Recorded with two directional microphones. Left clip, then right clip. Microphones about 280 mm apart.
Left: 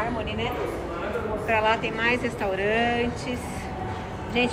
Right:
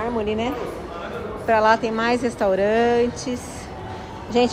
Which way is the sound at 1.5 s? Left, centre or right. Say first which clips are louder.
Right 6 dB; centre.